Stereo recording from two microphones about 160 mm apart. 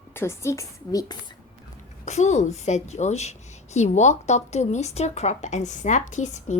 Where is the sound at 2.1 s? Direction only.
45° left (ahead or behind).